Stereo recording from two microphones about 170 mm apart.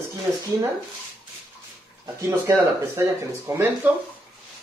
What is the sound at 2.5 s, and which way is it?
Speech, 15° right (ahead or behind).